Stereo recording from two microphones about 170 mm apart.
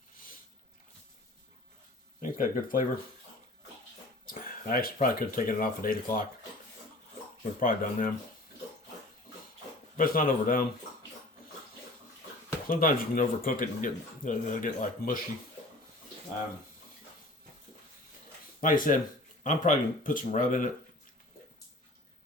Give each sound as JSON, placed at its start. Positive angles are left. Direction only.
{"t": 2.2, "sound": "speech", "side_deg": 55}
{"t": 4.3, "sound": "speech", "side_deg": 55}
{"t": 7.6, "sound": "speech", "side_deg": 55}
{"t": 10.0, "sound": "speech", "side_deg": 55}
{"t": 12.6, "sound": "speech", "side_deg": 55}
{"t": 18.6, "sound": "speech", "side_deg": 55}